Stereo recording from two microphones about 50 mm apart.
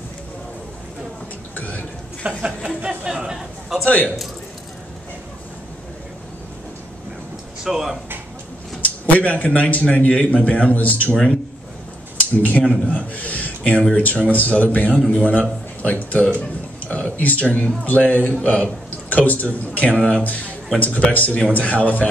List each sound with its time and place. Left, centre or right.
1.5 s speech: left
2.2 s a man's voice: right
3.8 s a man's voice: left
7.6 s speech: centre
8.8 s a man's voice: left
12.4 s a man's voice: left